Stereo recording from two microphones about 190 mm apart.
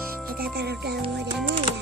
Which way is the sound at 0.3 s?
55° right (ahead or behind).